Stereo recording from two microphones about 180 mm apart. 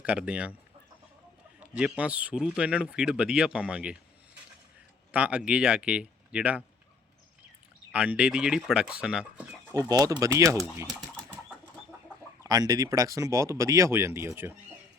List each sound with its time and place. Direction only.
0.0 s speech: 5° right (ahead or behind)
1.5 s speech: 5° right (ahead or behind)
5.1 s speech: 5° right (ahead or behind)
7.9 s speech: 5° right (ahead or behind)
9.9 s speech: 20° right (ahead or behind)
12.4 s speech: 20° right (ahead or behind)